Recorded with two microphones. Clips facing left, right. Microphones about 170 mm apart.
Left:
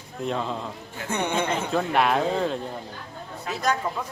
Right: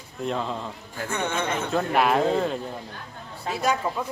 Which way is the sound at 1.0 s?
15° left (ahead or behind).